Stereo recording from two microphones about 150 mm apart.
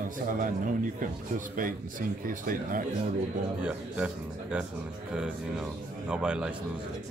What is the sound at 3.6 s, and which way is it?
A man's voice, 5° right (ahead or behind).